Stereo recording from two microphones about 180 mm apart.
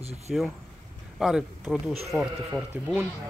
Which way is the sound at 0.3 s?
Centre (ahead or behind).